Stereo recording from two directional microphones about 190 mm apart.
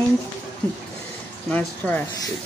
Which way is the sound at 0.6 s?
10° left (ahead or behind).